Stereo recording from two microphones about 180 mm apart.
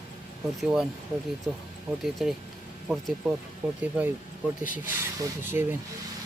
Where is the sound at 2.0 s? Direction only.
Centre (ahead or behind).